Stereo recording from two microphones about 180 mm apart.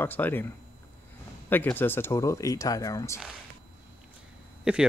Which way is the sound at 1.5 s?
10° left (ahead or behind).